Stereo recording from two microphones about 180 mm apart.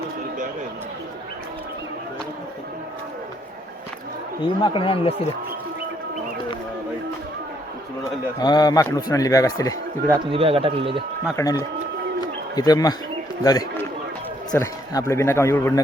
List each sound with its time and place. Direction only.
4.6 s speech: 30° left (ahead or behind)
8.4 s speech: 25° left (ahead or behind)
10.1 s speech: 30° right (ahead or behind)
11.3 s speech: 15° left (ahead or behind)
12.2 s bird: 20° left (ahead or behind)
13.4 s speech: 20° left (ahead or behind)